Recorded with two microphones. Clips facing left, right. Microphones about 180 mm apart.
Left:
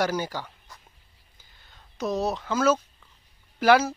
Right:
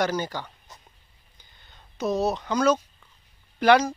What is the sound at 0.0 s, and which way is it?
Speech, 10° left (ahead or behind).